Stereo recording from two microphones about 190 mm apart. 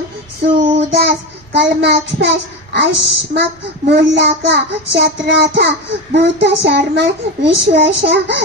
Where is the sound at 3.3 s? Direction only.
60° right (ahead or behind).